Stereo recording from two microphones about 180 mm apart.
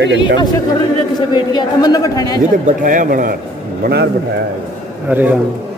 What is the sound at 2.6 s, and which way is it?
Speech, 50° right (ahead or behind).